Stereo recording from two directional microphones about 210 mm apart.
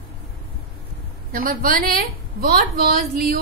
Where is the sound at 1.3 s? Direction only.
40° right (ahead or behind).